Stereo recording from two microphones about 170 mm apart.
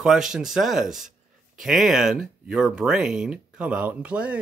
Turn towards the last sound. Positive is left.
turn(degrees=-10)  # may be behind; listen again after turning